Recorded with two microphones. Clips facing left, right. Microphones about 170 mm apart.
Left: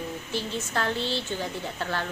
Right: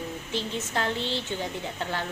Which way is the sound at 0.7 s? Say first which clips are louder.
Left 1 dB; 15° right (ahead or behind).